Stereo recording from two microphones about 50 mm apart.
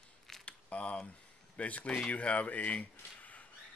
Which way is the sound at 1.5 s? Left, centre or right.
Left.